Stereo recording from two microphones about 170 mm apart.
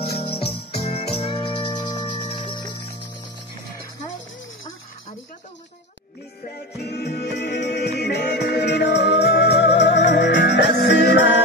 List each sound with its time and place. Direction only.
0.3 s music: 35° left (ahead or behind)
6.4 s music: 75° left (ahead or behind); by 11.3 s 90° left